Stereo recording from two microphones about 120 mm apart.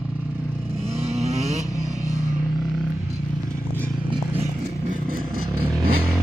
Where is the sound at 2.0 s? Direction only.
85° right.